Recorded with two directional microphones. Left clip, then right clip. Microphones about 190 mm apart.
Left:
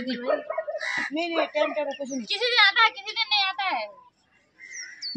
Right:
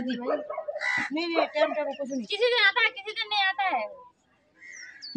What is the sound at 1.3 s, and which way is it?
Speech, 40° left (ahead or behind).